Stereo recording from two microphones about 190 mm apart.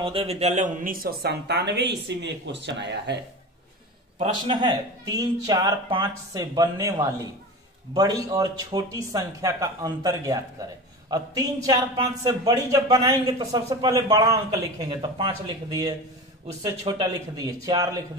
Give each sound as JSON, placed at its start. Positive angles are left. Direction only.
{"t": 0.0, "sound": "a woman's voice", "side_deg": -30}
{"t": 4.2, "sound": "a man's voice", "side_deg": -25}